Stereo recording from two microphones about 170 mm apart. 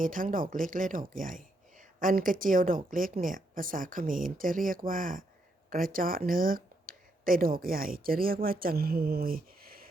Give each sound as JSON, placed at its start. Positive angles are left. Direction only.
{"t": 0.0, "sound": "speech", "side_deg": -50}